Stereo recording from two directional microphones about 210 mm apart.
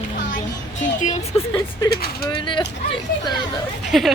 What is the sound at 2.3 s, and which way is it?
Speech, 25° left (ahead or behind).